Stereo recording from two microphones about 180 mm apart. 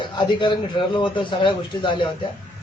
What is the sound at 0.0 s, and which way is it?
A man's voice, 25° left (ahead or behind).